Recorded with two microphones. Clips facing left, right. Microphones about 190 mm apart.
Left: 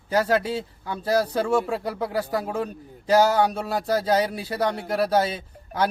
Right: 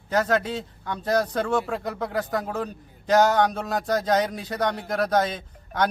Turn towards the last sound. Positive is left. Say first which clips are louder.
# even
turn(degrees=5)  # may be behind; listen again after turning